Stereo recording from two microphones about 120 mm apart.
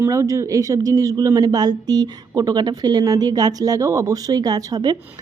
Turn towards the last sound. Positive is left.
turn(degrees=-30)  # may be behind; listen again after turning